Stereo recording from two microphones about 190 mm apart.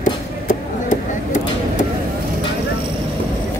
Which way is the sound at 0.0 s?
40° left (ahead or behind).